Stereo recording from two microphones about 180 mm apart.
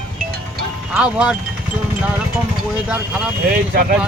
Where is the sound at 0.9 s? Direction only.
5° right (ahead or behind).